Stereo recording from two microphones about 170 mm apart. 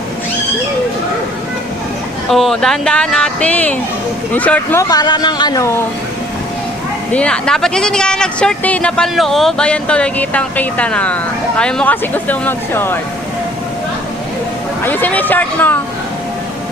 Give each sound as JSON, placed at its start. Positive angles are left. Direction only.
{"t": 2.3, "sound": "speech", "side_deg": 0}
{"t": 4.8, "sound": "speech", "side_deg": 20}
{"t": 7.1, "sound": "speech", "side_deg": 5}
{"t": 14.8, "sound": "speech", "side_deg": 10}